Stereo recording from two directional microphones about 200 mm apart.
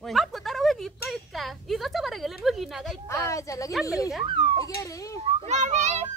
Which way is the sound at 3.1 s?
15° left (ahead or behind).